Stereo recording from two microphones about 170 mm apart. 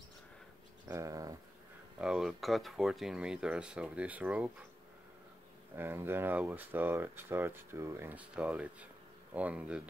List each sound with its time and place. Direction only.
0.8 s a sound: 20° right (ahead or behind)
2.0 s speech: 5° right (ahead or behind)
5.8 s speech: 15° right (ahead or behind)